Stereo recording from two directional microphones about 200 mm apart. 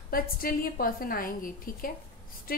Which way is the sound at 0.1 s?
45° left (ahead or behind).